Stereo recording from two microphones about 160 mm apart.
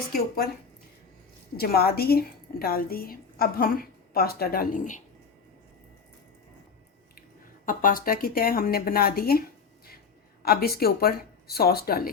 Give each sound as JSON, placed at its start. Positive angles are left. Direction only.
{"t": 1.5, "sound": "a woman's voice", "side_deg": 75}
{"t": 7.2, "sound": "speech", "side_deg": 60}
{"t": 10.4, "sound": "a woman's voice", "side_deg": 75}